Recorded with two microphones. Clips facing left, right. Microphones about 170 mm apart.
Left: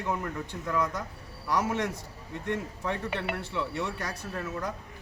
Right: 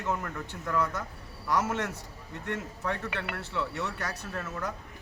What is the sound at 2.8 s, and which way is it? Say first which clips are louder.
Speech: left 1 dB; 15° left (ahead or behind).